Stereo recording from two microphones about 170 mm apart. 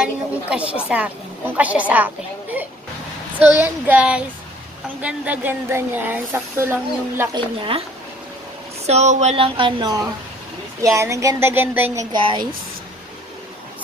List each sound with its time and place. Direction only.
0.0 s a woman's voice: 5° right (ahead or behind)
3.3 s speech: 10° right (ahead or behind)
8.8 s speech: 40° right (ahead or behind)